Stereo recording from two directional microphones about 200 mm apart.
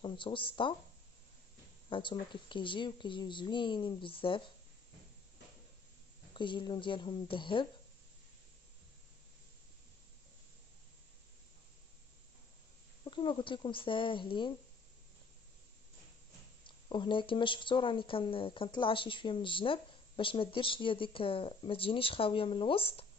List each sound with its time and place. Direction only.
0.0 s speech: 25° left (ahead or behind)
1.9 s speech: 25° left (ahead or behind)
6.3 s speech: 25° left (ahead or behind)
13.0 s speech: 25° left (ahead or behind)
16.6 s speech: 25° left (ahead or behind)